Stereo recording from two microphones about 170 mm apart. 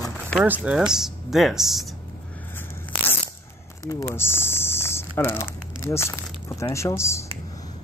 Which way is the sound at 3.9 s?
15° left (ahead or behind).